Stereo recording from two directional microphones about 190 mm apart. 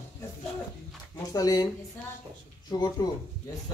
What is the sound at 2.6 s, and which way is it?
Speech, 20° left (ahead or behind).